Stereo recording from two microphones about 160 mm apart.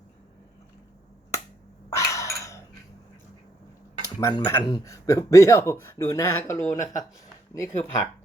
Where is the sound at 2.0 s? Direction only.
20° left (ahead or behind).